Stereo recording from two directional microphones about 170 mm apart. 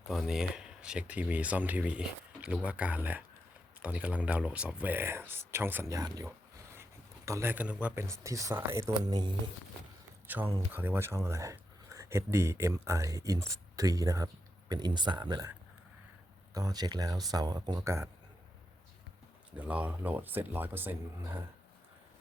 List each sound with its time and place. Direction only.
0.0 s speech: centre (ahead or behind); by 6.2 s 20° right (ahead or behind)
7.3 s speech: 15° right (ahead or behind)
10.2 s speech: 10° right (ahead or behind)
16.6 s speech: 20° right (ahead or behind)
19.5 s speech: 10° right (ahead or behind)